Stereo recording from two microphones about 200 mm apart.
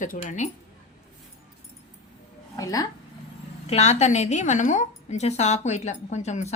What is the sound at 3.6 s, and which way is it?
A woman's voice, 35° left (ahead or behind).